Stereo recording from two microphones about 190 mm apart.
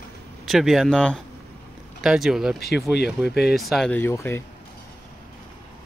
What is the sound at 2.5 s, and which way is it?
Speech, 55° left (ahead or behind).